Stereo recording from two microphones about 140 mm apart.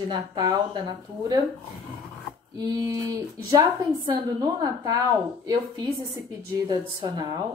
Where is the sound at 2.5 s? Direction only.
25° right (ahead or behind).